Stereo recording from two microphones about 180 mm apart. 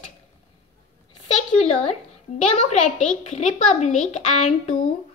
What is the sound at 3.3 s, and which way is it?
A woman's voice, 40° left (ahead or behind).